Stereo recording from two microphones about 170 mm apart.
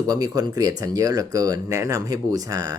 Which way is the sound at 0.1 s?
20° right (ahead or behind).